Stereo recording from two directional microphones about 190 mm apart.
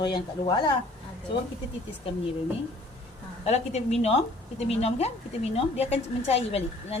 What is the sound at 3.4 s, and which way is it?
A woman's voice, 35° left (ahead or behind).